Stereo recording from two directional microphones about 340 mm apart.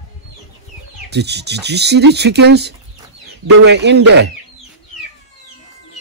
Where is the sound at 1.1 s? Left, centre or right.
Right.